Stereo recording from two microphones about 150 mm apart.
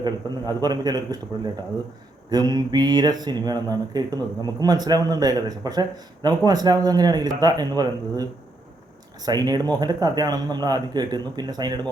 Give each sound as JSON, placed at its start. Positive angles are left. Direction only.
{"t": 0.0, "sound": "speech", "side_deg": -25}
{"t": 2.3, "sound": "speech", "side_deg": -25}